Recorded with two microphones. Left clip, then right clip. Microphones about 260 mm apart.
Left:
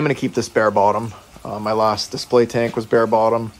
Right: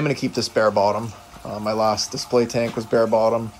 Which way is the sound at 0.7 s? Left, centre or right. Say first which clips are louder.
Left 4 dB; left.